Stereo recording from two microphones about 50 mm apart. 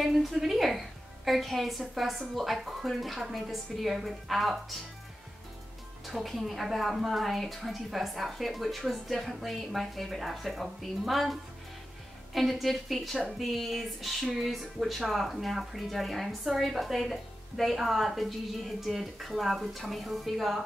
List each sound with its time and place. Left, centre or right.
0.0 s speech: centre
6.0 s speech: centre
12.4 s speech: centre